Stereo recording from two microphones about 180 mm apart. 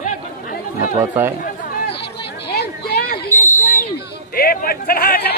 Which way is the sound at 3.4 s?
45° left (ahead or behind).